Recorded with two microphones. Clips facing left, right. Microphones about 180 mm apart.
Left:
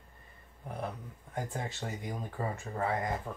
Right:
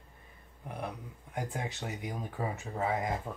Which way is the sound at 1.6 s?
15° right (ahead or behind).